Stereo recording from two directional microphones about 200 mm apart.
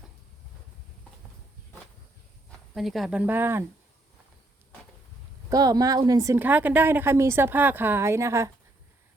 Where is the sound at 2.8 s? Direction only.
Centre (ahead or behind).